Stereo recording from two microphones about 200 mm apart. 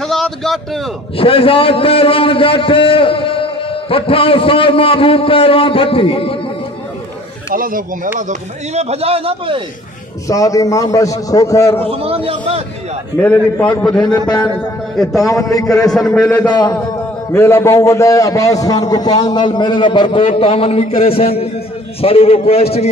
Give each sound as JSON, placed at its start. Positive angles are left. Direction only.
{"t": 0.0, "sound": "a man's voice", "side_deg": 0}
{"t": 1.1, "sound": "a man's voice", "side_deg": 25}
{"t": 7.5, "sound": "speech", "side_deg": -45}
{"t": 10.2, "sound": "a man's voice", "side_deg": 15}
{"t": 12.0, "sound": "speech", "side_deg": -30}
{"t": 13.2, "sound": "a man's voice", "side_deg": 10}
{"t": 15.2, "sound": "a man's voice", "side_deg": 15}
{"t": 15.6, "sound": "a man's voice", "side_deg": 0}
{"t": 16.2, "sound": "a man's voice", "side_deg": 15}